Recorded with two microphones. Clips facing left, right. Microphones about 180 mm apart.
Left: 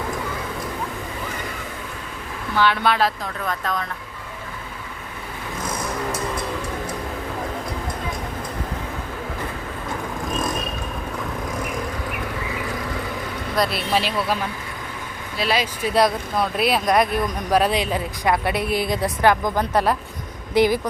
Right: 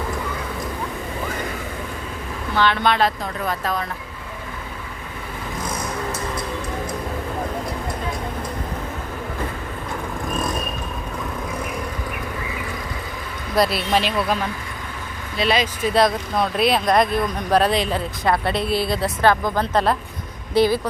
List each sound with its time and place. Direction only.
2.6 s speech: 10° left (ahead or behind)
3.4 s speech: 5° right (ahead or behind)
13.6 s speech: centre (ahead or behind)
15.4 s speech: 5° left (ahead or behind)